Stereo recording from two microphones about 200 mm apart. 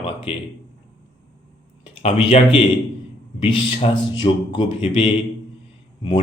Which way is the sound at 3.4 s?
25° left (ahead or behind).